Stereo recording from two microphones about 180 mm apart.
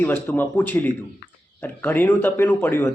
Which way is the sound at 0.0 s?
10° left (ahead or behind).